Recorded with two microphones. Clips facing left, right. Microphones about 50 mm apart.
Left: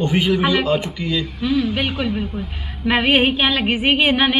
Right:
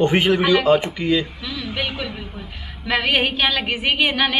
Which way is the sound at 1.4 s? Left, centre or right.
Left.